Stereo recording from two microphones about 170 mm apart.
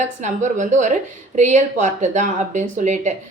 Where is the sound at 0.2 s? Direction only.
45° right (ahead or behind).